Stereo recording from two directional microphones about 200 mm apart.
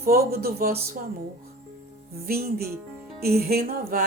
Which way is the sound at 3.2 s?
50° right (ahead or behind).